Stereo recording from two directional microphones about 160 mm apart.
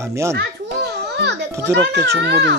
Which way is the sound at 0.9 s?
90° right.